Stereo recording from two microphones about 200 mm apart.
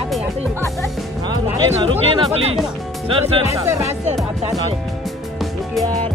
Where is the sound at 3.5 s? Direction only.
15° right (ahead or behind).